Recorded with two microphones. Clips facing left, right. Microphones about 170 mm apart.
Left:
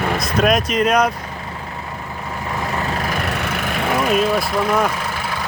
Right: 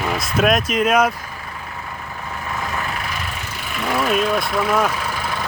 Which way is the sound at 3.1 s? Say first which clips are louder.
Left 7 dB; 65° left (ahead or behind).